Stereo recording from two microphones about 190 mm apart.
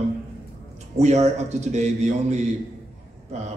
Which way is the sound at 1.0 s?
35° right (ahead or behind).